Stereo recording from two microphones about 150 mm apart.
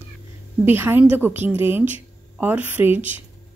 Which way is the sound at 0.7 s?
15° right (ahead or behind).